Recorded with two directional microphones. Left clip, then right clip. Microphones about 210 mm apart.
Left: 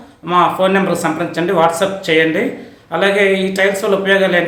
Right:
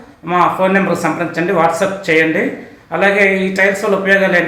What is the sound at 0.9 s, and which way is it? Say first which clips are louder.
Speech: right 1 dB; 10° left (ahead or behind).